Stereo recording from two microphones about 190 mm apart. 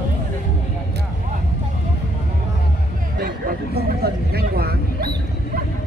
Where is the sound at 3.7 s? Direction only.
55° right (ahead or behind).